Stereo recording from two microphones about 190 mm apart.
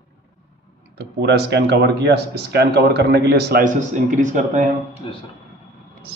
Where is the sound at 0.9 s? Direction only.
60° right (ahead or behind); by 4.6 s 40° right (ahead or behind).